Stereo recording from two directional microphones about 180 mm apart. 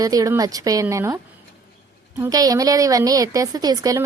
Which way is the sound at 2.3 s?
20° right (ahead or behind).